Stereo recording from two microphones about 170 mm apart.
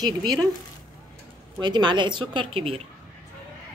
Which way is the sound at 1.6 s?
25° right (ahead or behind).